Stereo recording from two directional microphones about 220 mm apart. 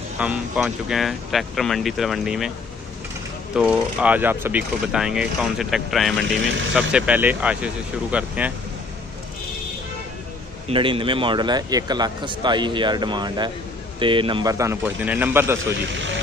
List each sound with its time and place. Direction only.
0.2 s speech: 5° right (ahead or behind)
3.5 s speech: 5° right (ahead or behind)
10.7 s a man's voice: 25° right (ahead or behind)